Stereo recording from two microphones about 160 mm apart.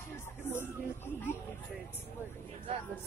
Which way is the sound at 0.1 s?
15° left (ahead or behind).